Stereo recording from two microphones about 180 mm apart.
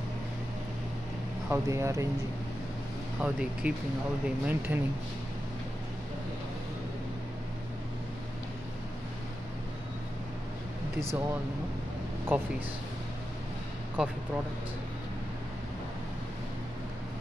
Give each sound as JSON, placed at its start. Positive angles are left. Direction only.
{"t": 1.5, "sound": "speech", "side_deg": -15}
{"t": 3.2, "sound": "speech", "side_deg": -5}
{"t": 11.0, "sound": "speech", "side_deg": -15}
{"t": 14.0, "sound": "speech", "side_deg": -5}